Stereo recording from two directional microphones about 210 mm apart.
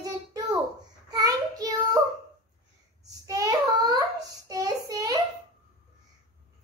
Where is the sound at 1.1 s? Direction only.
15° right (ahead or behind).